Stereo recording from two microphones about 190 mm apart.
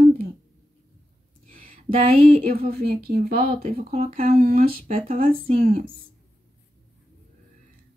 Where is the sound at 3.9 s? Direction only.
35° right (ahead or behind).